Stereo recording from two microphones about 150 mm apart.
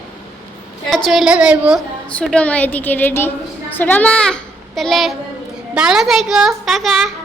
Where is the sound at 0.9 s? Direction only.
5° left (ahead or behind).